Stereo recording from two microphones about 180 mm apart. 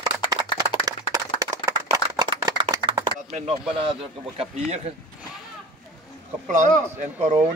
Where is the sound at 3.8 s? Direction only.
30° right (ahead or behind).